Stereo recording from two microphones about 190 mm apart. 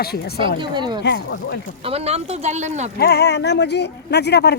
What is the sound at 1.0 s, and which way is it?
Speech, 60° left (ahead or behind).